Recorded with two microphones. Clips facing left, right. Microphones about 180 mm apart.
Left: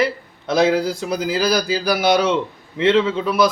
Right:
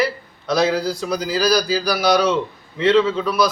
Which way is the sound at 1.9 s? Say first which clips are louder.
Left 1 dB; 25° left (ahead or behind).